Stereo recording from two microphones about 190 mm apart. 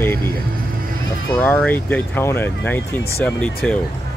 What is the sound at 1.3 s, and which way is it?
Speech, 10° left (ahead or behind).